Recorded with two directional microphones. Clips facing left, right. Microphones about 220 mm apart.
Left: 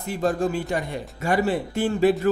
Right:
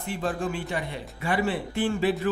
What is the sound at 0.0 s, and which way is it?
A man's voice, 40° left (ahead or behind).